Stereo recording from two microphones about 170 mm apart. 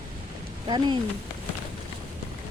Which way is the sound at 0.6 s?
25° right (ahead or behind).